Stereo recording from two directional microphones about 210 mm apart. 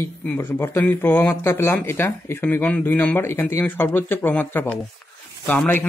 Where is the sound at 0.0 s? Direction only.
10° left (ahead or behind).